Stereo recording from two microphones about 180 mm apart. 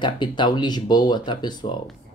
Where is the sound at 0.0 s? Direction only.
25° left (ahead or behind).